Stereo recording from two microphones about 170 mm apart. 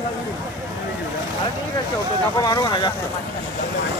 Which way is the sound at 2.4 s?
25° left (ahead or behind).